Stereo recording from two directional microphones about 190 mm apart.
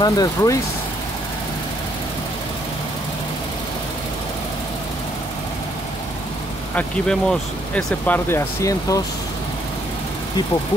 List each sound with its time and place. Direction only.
0.0 s speech: 20° left (ahead or behind)
6.7 s speech: 5° left (ahead or behind)